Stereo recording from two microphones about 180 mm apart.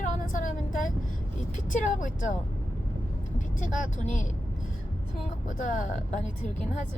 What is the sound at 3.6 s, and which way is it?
Speech, 45° left (ahead or behind).